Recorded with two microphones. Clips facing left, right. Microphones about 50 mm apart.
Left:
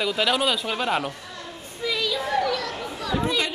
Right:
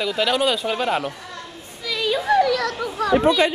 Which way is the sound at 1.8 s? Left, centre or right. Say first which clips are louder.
Left 1 dB; left.